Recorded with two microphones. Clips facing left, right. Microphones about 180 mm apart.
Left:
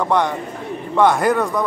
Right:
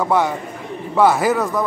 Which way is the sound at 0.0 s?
5° right (ahead or behind).